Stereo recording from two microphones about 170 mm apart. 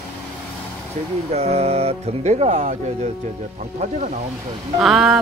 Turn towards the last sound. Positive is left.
turn(degrees=0)  # may be behind; listen again after turning